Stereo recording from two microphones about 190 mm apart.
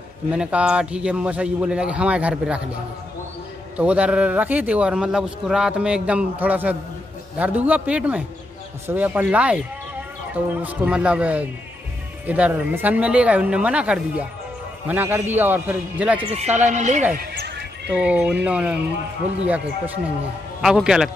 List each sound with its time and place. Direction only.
0.3 s speech: 5° right (ahead or behind)
16.2 s speech: 35° right (ahead or behind)
17.2 s horse: 60° right (ahead or behind)
17.9 s speech: 5° right (ahead or behind)
20.6 s a man's voice: 5° right (ahead or behind)